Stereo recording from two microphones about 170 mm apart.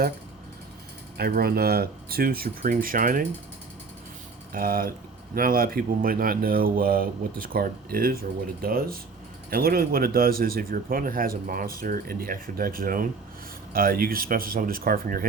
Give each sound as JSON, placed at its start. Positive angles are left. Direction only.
{"t": 1.1, "sound": "speech", "side_deg": -65}
{"t": 4.5, "sound": "speech", "side_deg": -55}